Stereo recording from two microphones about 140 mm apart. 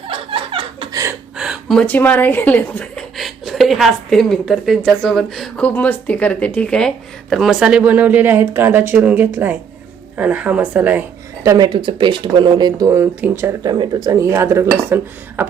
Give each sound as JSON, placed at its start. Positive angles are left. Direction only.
{"t": 0.1, "sound": "chuckle", "side_deg": -40}
{"t": 1.4, "sound": "a woman's voice", "side_deg": 0}
{"t": 3.2, "sound": "a woman's voice", "side_deg": 0}
{"t": 11.4, "sound": "speech", "side_deg": -30}
{"t": 13.6, "sound": "speech", "side_deg": -30}